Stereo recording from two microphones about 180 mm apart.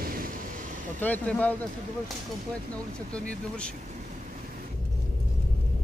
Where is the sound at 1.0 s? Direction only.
10° left (ahead or behind).